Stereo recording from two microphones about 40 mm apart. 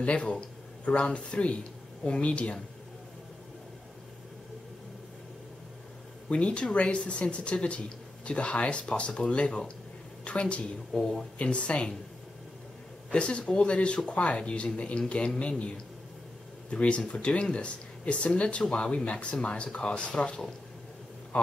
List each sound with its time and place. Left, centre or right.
0.0 s speech: left
6.2 s speech: left
10.9 s speech: centre
11.3 s speech: left
13.1 s speech: left
16.7 s speech: left